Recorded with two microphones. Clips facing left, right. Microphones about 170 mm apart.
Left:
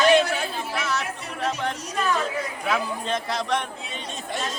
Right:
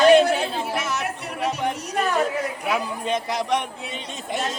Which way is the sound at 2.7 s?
15° right (ahead or behind).